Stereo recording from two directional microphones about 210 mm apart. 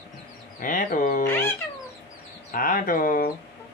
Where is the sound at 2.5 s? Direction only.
40° left (ahead or behind).